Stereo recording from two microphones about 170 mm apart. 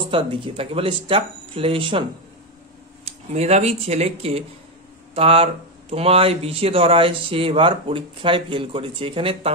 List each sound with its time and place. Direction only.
0.1 s speech: 30° right (ahead or behind)
3.1 s speech: 40° right (ahead or behind)